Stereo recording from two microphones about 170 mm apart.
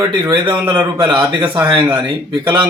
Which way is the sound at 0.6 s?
30° right (ahead or behind).